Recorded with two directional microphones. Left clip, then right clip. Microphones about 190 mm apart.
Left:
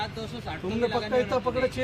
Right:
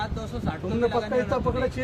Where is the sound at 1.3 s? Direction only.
40° right (ahead or behind).